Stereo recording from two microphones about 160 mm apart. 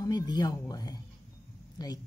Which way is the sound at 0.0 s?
25° left (ahead or behind).